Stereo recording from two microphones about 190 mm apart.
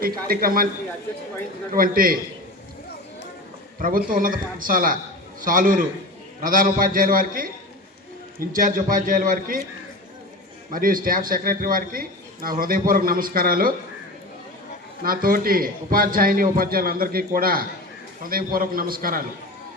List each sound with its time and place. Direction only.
0.0 s a man's voice: 50° right (ahead or behind)
1.7 s a man's voice: 50° right (ahead or behind)
3.8 s a man's voice: 45° right (ahead or behind)
8.5 s a man's voice: 45° right (ahead or behind)
10.7 s a man's voice: 45° right (ahead or behind)
15.0 s a man's voice: 50° right (ahead or behind)